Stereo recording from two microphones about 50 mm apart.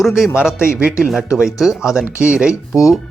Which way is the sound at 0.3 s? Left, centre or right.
Right.